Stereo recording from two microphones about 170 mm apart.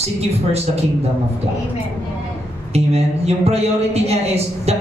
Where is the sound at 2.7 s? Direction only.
40° right (ahead or behind).